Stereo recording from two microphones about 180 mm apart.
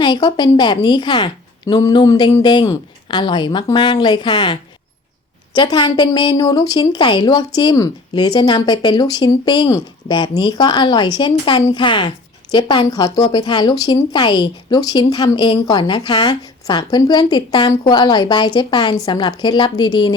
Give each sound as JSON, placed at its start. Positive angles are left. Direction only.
{"t": 0.0, "sound": "a woman's voice", "side_deg": 25}
{"t": 5.5, "sound": "a woman's voice", "side_deg": 25}